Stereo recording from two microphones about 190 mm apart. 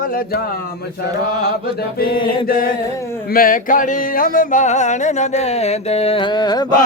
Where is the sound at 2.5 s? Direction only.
50° left (ahead or behind); by 6.7 s 20° left (ahead or behind).